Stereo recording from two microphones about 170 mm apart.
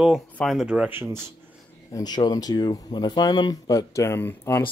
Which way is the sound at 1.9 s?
25° left (ahead or behind).